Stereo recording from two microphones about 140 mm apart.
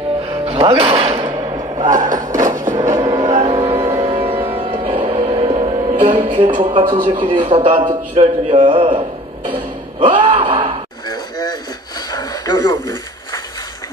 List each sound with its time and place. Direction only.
0.5 s speech: 45° right (ahead or behind)
1.5 s a sound: 30° right (ahead or behind)
2.0 s speech: 25° right (ahead or behind)
2.9 s music: 25° right (ahead or behind)
3.3 s music: 45° right (ahead or behind)
5.9 s music: 65° right (ahead or behind)
6.2 s music: 40° right (ahead or behind)
6.6 s speech: 35° right (ahead or behind)
8.2 s music: 60° right (ahead or behind)
8.6 s speech: 35° right (ahead or behind)
9.9 s a sound: 35° right (ahead or behind)
11.1 s a sound: 30° left (ahead or behind)